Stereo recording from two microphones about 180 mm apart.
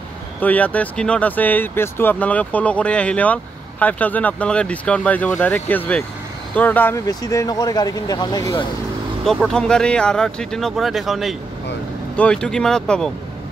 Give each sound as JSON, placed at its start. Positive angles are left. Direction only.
{"t": 0.4, "sound": "speech", "side_deg": 10}
{"t": 9.2, "sound": "speech", "side_deg": 0}